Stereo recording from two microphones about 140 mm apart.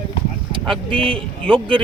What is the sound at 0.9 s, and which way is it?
Speech, 40° right (ahead or behind).